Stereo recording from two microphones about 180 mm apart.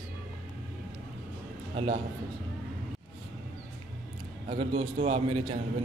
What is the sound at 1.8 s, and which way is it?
Speech, 30° right (ahead or behind).